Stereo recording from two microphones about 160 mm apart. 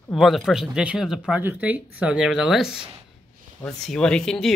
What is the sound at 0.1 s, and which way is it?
Speech, centre (ahead or behind).